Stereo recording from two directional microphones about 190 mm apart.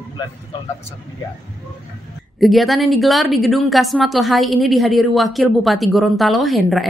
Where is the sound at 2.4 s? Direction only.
Centre (ahead or behind).